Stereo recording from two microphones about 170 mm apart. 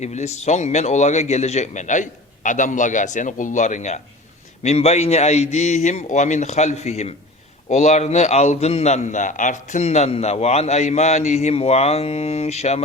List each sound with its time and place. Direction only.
0.0 s a man's voice: 40° left (ahead or behind)